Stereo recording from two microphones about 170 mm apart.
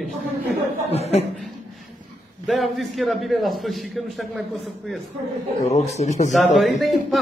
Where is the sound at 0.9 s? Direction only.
40° left (ahead or behind).